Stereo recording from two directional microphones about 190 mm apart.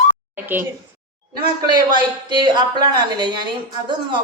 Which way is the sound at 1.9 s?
25° right (ahead or behind).